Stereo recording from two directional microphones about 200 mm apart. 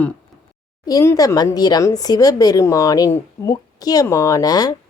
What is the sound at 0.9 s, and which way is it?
Speech, 15° left (ahead or behind).